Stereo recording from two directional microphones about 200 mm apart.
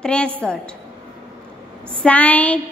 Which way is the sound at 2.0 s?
5° left (ahead or behind).